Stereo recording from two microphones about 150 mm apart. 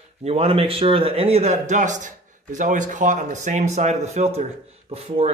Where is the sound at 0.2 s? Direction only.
45° right (ahead or behind).